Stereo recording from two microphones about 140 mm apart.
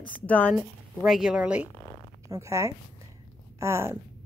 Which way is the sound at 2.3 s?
20° right (ahead or behind).